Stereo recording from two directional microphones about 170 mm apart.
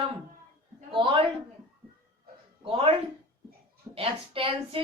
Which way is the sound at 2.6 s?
35° right (ahead or behind).